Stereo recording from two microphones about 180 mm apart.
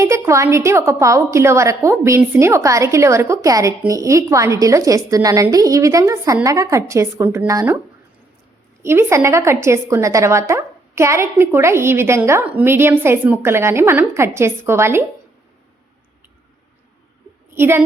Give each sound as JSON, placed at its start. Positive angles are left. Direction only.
{"t": 0.0, "sound": "a woman's voice", "side_deg": -15}
{"t": 8.8, "sound": "a woman's voice", "side_deg": -15}
{"t": 17.5, "sound": "a woman's voice", "side_deg": -15}